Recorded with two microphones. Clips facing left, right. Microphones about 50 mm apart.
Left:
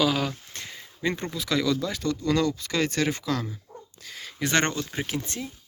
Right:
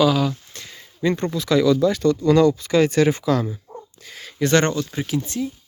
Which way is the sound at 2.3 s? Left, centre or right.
Centre.